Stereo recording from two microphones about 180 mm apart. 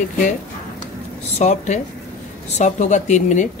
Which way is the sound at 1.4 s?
40° left (ahead or behind).